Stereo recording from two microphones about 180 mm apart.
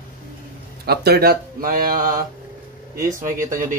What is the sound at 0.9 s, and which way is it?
Speech, 60° right (ahead or behind).